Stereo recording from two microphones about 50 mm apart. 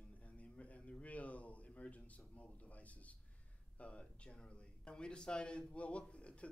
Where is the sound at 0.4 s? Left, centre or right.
Left.